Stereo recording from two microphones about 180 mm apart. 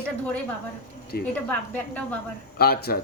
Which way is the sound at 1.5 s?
5° left (ahead or behind).